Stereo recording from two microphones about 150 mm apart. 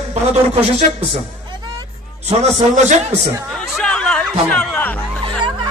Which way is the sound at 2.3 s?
50° right (ahead or behind).